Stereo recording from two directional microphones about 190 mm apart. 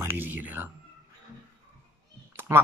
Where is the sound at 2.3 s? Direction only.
10° right (ahead or behind).